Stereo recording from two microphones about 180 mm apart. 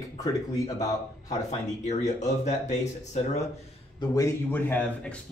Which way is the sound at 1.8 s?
40° left (ahead or behind).